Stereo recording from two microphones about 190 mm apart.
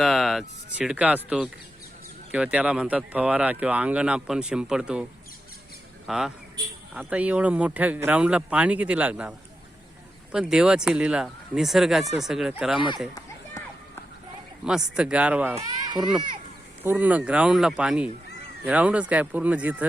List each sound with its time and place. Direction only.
0.0 s speech: centre (ahead or behind)
6.1 s speech: centre (ahead or behind)
10.3 s speech: 5° right (ahead or behind)
13.1 s run: 15° left (ahead or behind)
14.6 s speech: 5° right (ahead or behind)
15.6 s baby cry: 20° right (ahead or behind)
16.8 s speech: 10° right (ahead or behind)